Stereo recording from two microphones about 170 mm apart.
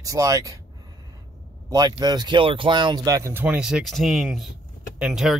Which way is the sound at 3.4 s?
5° right (ahead or behind).